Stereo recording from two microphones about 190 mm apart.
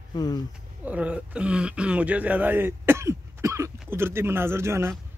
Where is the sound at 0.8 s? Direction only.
5° right (ahead or behind).